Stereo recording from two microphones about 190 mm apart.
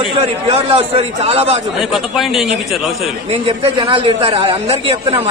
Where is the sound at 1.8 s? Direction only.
Centre (ahead or behind).